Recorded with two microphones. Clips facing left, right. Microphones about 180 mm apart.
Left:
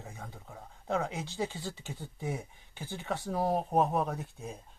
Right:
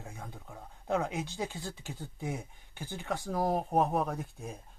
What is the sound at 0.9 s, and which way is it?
Speech, 15° right (ahead or behind).